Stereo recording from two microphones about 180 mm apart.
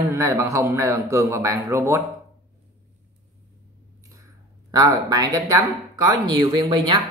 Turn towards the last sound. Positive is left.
turn(degrees=-25)  # may be behind; listen again after turning